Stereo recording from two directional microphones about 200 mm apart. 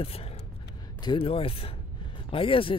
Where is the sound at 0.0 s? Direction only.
30° left (ahead or behind).